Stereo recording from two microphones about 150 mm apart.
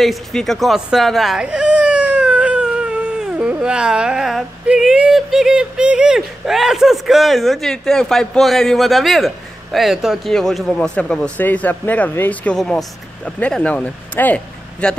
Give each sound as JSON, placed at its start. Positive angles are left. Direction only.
{"t": 0.0, "sound": "speech", "side_deg": 0}